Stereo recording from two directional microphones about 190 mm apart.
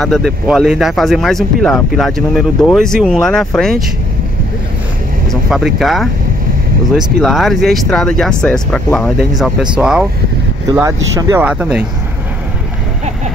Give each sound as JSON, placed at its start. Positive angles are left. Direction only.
{"t": 0.0, "sound": "speech", "side_deg": 0}
{"t": 5.3, "sound": "speech", "side_deg": 0}
{"t": 10.7, "sound": "speech", "side_deg": -15}